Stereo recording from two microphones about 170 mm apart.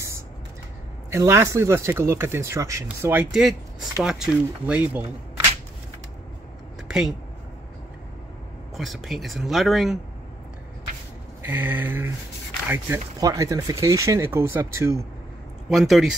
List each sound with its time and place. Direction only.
1.1 s speech: 15° right (ahead or behind)
6.9 s speech: 5° right (ahead or behind)
8.7 s speech: centre (ahead or behind)
11.4 s speech: 10° right (ahead or behind)
15.7 s speech: centre (ahead or behind)